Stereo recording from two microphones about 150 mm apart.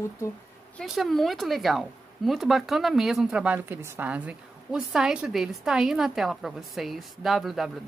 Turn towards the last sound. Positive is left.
turn(degrees=0)  # may be behind; listen again after turning